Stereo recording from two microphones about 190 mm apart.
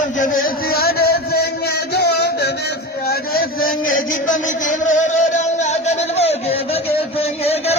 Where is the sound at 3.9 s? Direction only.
40° left (ahead or behind).